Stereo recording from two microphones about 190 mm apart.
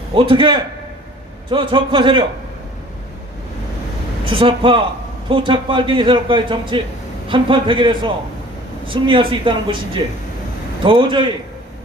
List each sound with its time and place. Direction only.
0.1 s a man's voice: 25° right (ahead or behind)
4.3 s a man's voice: 25° right (ahead or behind)